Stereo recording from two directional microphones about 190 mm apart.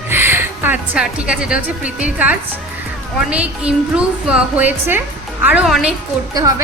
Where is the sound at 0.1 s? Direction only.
10° right (ahead or behind).